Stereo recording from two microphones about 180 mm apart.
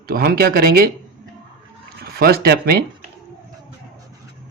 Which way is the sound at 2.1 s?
60° right (ahead or behind).